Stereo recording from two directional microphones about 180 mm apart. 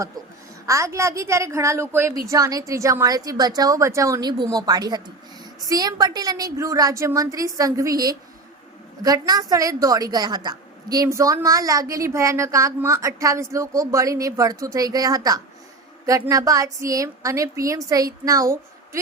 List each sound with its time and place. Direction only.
0.7 s a woman's voice: 15° right (ahead or behind)